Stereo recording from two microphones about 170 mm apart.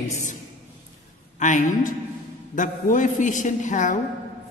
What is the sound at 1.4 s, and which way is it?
A man's voice, 45° left (ahead or behind).